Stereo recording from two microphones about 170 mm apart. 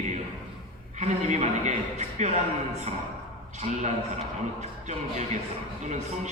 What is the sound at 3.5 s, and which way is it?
A man's voice, 40° right (ahead or behind).